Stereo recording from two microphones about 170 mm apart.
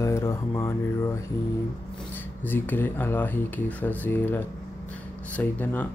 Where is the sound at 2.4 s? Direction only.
10° left (ahead or behind).